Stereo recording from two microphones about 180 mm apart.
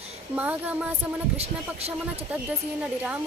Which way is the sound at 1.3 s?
35° right (ahead or behind).